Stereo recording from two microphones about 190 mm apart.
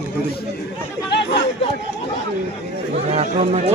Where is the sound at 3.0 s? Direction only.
35° right (ahead or behind).